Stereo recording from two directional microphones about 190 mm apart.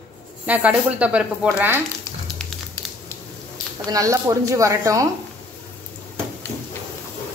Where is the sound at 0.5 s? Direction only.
5° right (ahead or behind).